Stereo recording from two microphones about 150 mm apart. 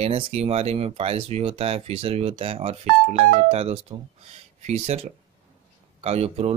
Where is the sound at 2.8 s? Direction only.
55° right (ahead or behind).